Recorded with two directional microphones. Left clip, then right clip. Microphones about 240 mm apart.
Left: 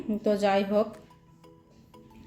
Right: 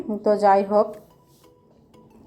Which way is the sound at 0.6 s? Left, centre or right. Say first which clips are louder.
Right 7 dB; centre.